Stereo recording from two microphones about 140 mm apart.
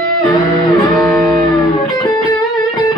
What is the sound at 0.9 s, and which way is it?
Music, centre (ahead or behind).